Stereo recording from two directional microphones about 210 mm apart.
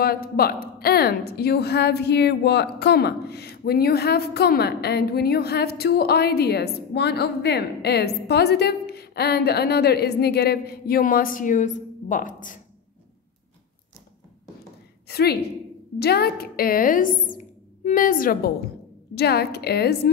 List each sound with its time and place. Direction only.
0.0 s a woman's voice: 45° left (ahead or behind)
15.0 s a woman's voice: 50° left (ahead or behind)